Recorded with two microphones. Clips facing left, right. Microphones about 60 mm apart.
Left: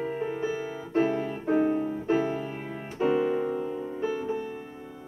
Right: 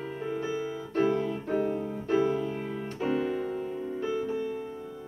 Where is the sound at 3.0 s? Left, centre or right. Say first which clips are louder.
Left 5 dB; left.